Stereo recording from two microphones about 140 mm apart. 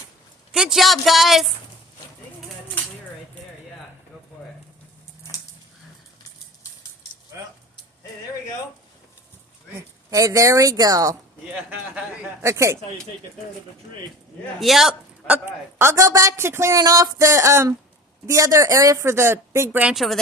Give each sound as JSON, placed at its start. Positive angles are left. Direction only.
{"t": 0.5, "sound": "speech", "side_deg": -5}
{"t": 7.3, "sound": "a sound", "side_deg": -20}
{"t": 10.1, "sound": "speech", "side_deg": -25}
{"t": 11.7, "sound": "a man's voice", "side_deg": -10}
{"t": 12.4, "sound": "speech", "side_deg": -20}
{"t": 14.6, "sound": "a man's voice", "side_deg": 0}
{"t": 15.4, "sound": "speech", "side_deg": -20}